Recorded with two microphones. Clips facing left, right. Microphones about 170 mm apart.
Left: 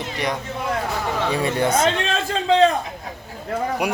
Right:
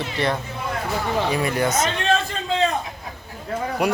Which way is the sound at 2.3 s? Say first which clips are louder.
Left 7 dB; 75° left (ahead or behind).